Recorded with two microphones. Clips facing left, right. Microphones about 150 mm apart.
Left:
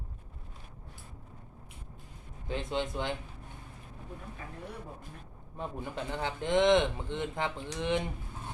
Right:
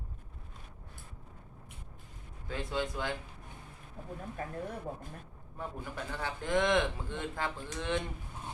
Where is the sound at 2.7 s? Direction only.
20° left (ahead or behind).